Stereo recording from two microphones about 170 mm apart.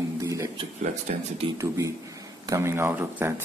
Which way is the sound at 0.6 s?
35° right (ahead or behind).